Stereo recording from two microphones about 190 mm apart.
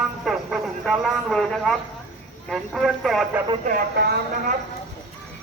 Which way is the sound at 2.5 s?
Centre (ahead or behind).